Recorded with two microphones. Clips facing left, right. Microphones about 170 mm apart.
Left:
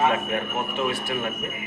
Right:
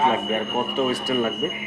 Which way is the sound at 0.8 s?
40° right (ahead or behind).